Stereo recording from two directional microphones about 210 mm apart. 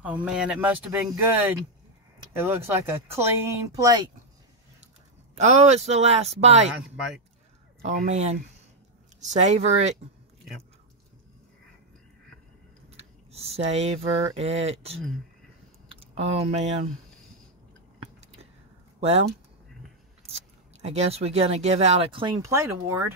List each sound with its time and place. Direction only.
0.0 s speech: 5° right (ahead or behind)
5.3 s speech: 30° right (ahead or behind)
7.8 s speech: 35° right (ahead or behind)
12.9 s speech: 30° right (ahead or behind)
16.0 s speech: 30° right (ahead or behind)
18.9 s speech: 30° right (ahead or behind)
20.8 s speech: 30° right (ahead or behind); by 23.1 s 15° right (ahead or behind)